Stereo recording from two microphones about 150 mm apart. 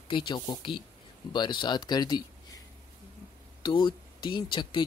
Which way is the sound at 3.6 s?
30° left (ahead or behind).